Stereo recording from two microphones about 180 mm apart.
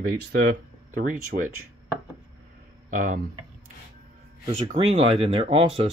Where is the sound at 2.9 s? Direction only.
45° right (ahead or behind).